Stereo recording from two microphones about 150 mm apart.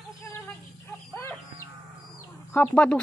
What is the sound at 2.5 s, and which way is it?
Speech, 10° left (ahead or behind).